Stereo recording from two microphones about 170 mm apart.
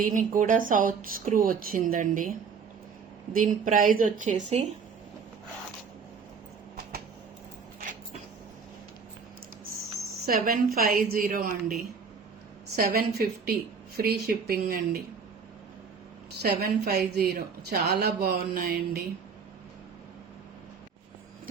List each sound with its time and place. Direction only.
0.0 s a woman's voice: 50° right (ahead or behind)
3.3 s a woman's voice: 50° right (ahead or behind)
10.2 s speech: 60° right (ahead or behind)
12.7 s speech: 60° right (ahead or behind)
16.4 s a woman's voice: 65° right (ahead or behind)